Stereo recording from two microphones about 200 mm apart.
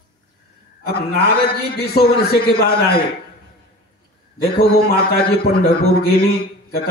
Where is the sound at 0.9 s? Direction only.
50° left (ahead or behind).